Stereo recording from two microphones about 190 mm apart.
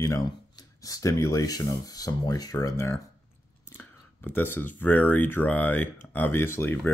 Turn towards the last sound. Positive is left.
turn(degrees=10)  # may be behind; listen again after turning